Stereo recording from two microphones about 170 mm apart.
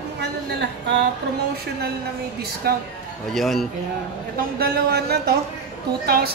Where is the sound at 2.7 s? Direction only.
65° right (ahead or behind).